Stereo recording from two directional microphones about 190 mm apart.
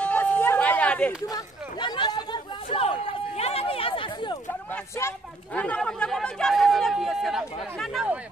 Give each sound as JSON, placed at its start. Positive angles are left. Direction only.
{"t": 0.0, "sound": "a sound", "side_deg": 10}
{"t": 1.2, "sound": "chatter", "side_deg": 20}
{"t": 4.6, "sound": "speech", "side_deg": 10}